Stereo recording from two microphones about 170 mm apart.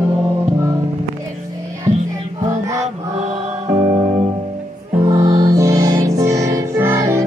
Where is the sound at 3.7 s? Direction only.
40° right (ahead or behind).